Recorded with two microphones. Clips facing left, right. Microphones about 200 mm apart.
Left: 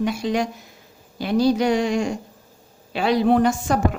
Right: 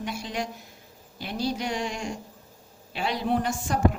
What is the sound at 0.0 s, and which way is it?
A woman's voice, 90° left.